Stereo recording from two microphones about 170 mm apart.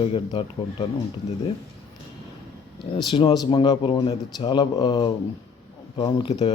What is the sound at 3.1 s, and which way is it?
A man's voice, 30° left (ahead or behind).